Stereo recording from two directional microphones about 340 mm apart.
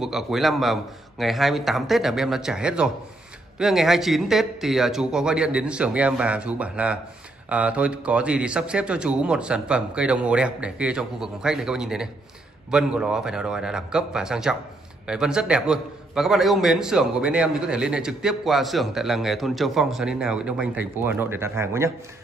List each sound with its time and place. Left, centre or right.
0.0 s a man's voice: centre